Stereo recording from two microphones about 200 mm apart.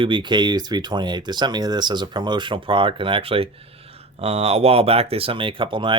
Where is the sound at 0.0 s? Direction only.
25° right (ahead or behind).